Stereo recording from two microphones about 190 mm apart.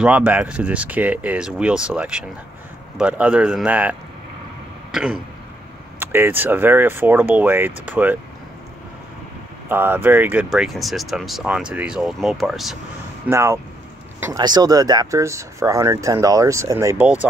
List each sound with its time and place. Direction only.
0.0 s speech: 5° right (ahead or behind)
4.9 s speech: 5° right (ahead or behind)
9.7 s speech: 10° right (ahead or behind)
13.3 s speech: 15° right (ahead or behind)